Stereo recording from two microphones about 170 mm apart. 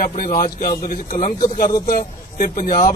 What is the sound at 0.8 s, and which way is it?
A man's voice, 45° left (ahead or behind).